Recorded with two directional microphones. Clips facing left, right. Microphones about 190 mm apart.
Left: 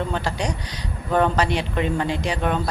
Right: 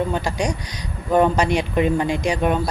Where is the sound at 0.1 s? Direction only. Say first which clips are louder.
Right 3 dB; 15° right (ahead or behind).